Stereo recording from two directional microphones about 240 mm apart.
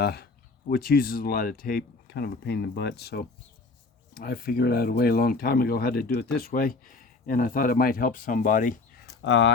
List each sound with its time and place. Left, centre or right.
0.0 s speech: left
9.2 s speech: left